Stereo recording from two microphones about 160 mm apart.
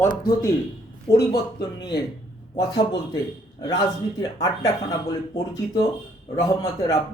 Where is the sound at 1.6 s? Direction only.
25° left (ahead or behind).